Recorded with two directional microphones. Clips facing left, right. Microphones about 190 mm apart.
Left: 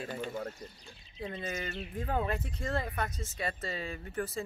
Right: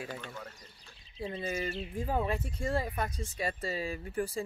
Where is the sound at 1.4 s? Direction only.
10° right (ahead or behind).